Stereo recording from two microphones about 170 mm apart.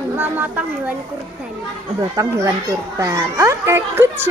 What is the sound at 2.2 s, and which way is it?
A child's voice, 15° right (ahead or behind).